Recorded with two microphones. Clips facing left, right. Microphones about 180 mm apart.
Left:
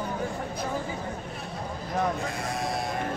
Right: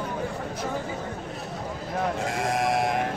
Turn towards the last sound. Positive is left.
turn(degrees=-90)